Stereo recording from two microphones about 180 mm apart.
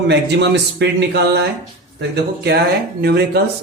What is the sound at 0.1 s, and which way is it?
Speech, 70° right (ahead or behind).